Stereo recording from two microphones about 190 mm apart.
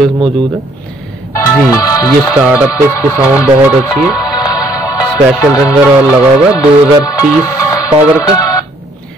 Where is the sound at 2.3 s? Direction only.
5° right (ahead or behind).